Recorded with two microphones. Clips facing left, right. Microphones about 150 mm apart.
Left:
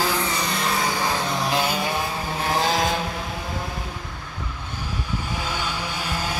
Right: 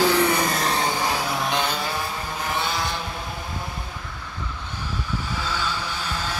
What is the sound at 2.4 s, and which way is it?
Vehicle, 90° left.